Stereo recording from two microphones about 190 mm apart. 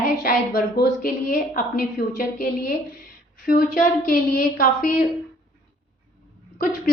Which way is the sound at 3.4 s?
50° left (ahead or behind).